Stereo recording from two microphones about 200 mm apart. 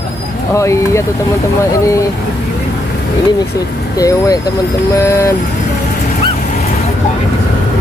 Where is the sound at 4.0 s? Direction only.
15° left (ahead or behind).